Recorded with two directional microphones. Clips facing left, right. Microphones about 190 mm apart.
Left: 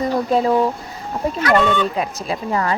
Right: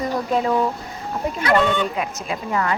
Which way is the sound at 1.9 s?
35° left (ahead or behind).